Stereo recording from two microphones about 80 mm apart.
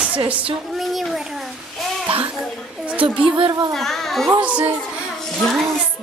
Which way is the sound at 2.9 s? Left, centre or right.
Centre.